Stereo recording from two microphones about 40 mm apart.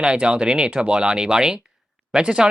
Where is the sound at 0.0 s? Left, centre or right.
Right.